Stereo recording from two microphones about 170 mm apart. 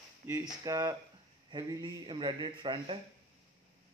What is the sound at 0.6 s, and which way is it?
A man's voice, 20° right (ahead or behind).